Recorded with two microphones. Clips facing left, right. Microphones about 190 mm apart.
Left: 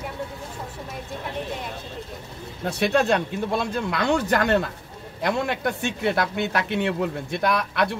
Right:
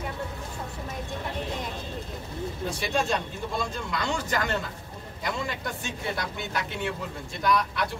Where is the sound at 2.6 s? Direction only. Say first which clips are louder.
Left 8 dB; 65° left (ahead or behind).